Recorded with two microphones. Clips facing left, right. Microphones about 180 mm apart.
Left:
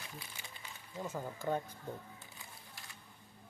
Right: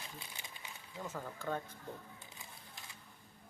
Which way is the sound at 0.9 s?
15° left (ahead or behind).